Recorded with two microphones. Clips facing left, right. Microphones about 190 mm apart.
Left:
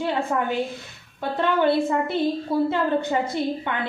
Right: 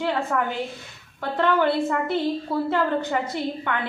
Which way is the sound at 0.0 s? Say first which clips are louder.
Even; 20° left (ahead or behind).